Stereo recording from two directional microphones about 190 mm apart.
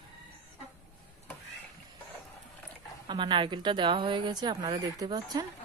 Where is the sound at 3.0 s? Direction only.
25° right (ahead or behind).